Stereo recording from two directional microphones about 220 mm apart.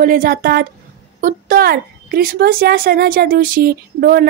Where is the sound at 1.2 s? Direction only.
45° right (ahead or behind).